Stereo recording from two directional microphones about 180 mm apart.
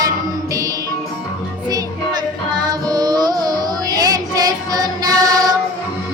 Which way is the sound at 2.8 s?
20° right (ahead or behind).